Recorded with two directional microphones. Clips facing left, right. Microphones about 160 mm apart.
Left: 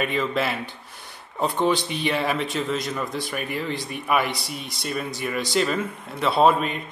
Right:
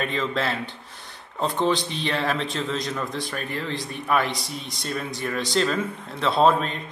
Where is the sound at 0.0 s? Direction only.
10° left (ahead or behind).